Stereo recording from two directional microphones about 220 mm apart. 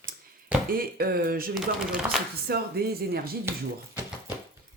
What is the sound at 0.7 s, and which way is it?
Speech, 40° right (ahead or behind).